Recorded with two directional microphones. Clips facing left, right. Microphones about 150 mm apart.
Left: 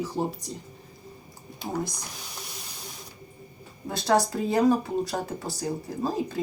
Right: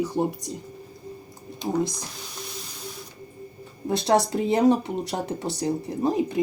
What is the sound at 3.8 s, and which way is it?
Speech, 25° right (ahead or behind).